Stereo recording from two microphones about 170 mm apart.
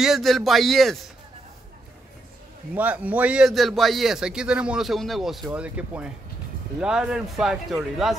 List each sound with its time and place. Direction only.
0.0 s a man's voice: centre (ahead or behind)
2.7 s a man's voice: 10° right (ahead or behind)